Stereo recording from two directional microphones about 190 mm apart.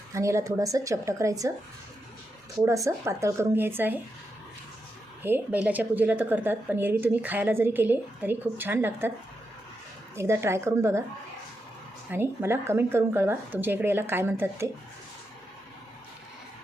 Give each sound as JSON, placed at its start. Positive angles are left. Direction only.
{"t": 0.1, "sound": "a woman's voice", "side_deg": -15}
{"t": 2.6, "sound": "a woman's voice", "side_deg": -15}
{"t": 5.2, "sound": "a woman's voice", "side_deg": -10}
{"t": 10.2, "sound": "a woman's voice", "side_deg": -15}
{"t": 12.1, "sound": "a woman's voice", "side_deg": -10}